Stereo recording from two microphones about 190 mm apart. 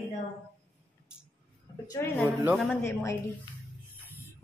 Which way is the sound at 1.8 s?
10° left (ahead or behind).